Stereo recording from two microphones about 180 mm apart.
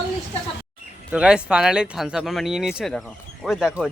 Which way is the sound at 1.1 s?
5° right (ahead or behind).